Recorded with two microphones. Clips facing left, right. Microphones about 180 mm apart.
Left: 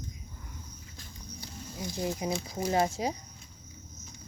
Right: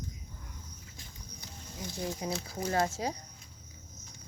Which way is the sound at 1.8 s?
15° left (ahead or behind).